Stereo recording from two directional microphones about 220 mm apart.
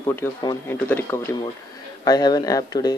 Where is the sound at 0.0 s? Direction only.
10° left (ahead or behind).